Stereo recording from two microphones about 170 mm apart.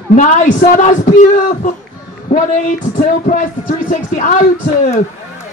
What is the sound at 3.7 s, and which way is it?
Speech, 45° left (ahead or behind).